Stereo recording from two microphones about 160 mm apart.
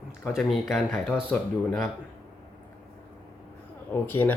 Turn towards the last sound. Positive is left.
turn(degrees=15)  # may be behind; listen again after turning